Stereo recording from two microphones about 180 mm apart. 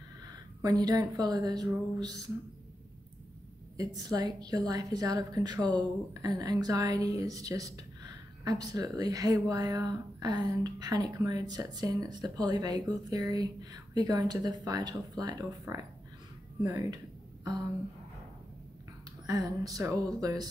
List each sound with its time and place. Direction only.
0.6 s a woman's voice: 20° right (ahead or behind)
4.1 s a woman's voice: 20° right (ahead or behind)
19.2 s a woman's voice: 20° right (ahead or behind)